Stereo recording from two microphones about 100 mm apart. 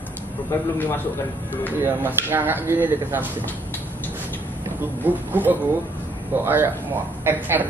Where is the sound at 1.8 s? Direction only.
20° right (ahead or behind).